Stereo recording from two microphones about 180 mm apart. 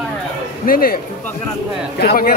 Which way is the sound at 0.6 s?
55° left (ahead or behind).